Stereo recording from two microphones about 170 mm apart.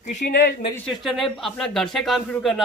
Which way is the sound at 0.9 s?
Centre (ahead or behind).